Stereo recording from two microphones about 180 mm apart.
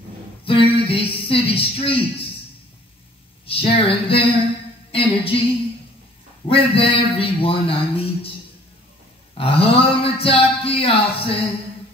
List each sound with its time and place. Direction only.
0.5 s a man's voice: 30° left (ahead or behind)
3.4 s a man's voice: 30° left (ahead or behind)
6.4 s a man's voice: 30° left (ahead or behind)
9.4 s a sound: 30° left (ahead or behind)